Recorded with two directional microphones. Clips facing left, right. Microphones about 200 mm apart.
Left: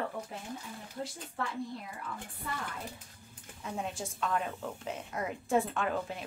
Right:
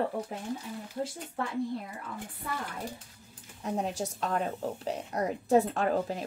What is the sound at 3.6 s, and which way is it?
A woman's voice, 40° right (ahead or behind).